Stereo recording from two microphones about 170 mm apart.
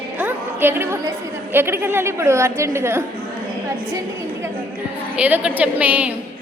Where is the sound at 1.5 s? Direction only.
15° right (ahead or behind).